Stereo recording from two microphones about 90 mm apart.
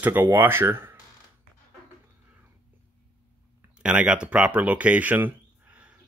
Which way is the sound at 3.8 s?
10° right (ahead or behind).